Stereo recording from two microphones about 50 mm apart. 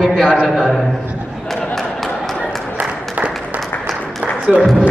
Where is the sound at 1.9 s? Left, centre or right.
Centre.